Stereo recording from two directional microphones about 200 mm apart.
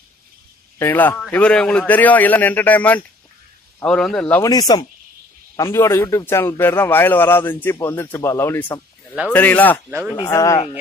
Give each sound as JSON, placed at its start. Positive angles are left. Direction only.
{"t": 0.7, "sound": "a man's voice", "side_deg": 10}
{"t": 4.4, "sound": "a man's voice", "side_deg": 20}
{"t": 9.8, "sound": "speech", "side_deg": -10}
{"t": 10.1, "sound": "a man's voice", "side_deg": 20}